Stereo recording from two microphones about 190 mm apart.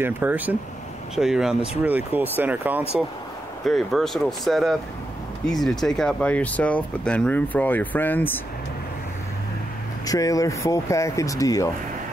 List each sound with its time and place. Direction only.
0.0 s speech: 10° right (ahead or behind); by 8.4 s 10° left (ahead or behind)
10.0 s speech: 20° left (ahead or behind)